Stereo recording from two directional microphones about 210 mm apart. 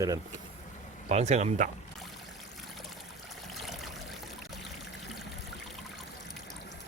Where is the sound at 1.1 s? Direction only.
30° right (ahead or behind).